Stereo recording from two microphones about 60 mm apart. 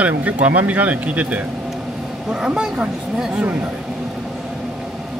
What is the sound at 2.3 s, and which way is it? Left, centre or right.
Speech, centre.